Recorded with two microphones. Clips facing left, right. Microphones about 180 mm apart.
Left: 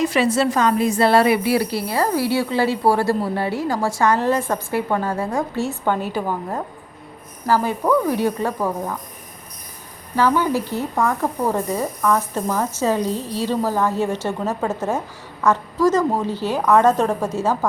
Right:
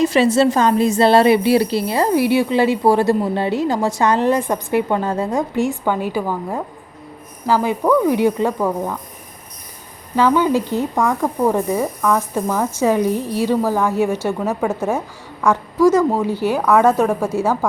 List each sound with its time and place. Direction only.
0.0 s a woman's voice: 25° right (ahead or behind); by 6.2 s 10° right (ahead or behind)
7.4 s speech: 15° right (ahead or behind)
10.2 s speech: 15° right (ahead or behind)